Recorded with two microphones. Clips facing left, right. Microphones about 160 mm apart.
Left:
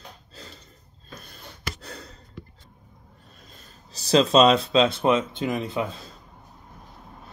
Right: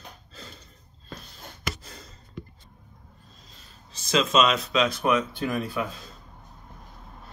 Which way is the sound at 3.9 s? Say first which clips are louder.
Left 5 dB; 35° left (ahead or behind).